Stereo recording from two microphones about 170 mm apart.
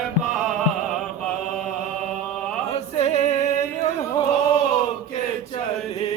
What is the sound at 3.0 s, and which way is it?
Music, 40° left (ahead or behind).